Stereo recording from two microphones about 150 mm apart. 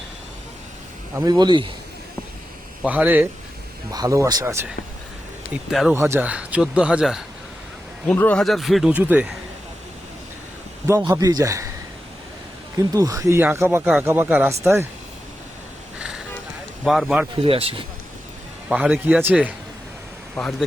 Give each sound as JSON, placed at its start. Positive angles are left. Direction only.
{"t": 1.1, "sound": "speech", "side_deg": -25}
{"t": 2.8, "sound": "speech", "side_deg": -10}
{"t": 3.9, "sound": "speech", "side_deg": -25}
{"t": 5.9, "sound": "speech", "side_deg": -15}
{"t": 8.0, "sound": "speech", "side_deg": 10}
{"t": 11.2, "sound": "speech", "side_deg": -25}
{"t": 12.7, "sound": "speech", "side_deg": -25}
{"t": 16.0, "sound": "a sound", "side_deg": -5}
{"t": 16.8, "sound": "speech", "side_deg": 0}
{"t": 17.3, "sound": "speech", "side_deg": -40}
{"t": 18.7, "sound": "speech", "side_deg": -10}
{"t": 20.3, "sound": "speech", "side_deg": 0}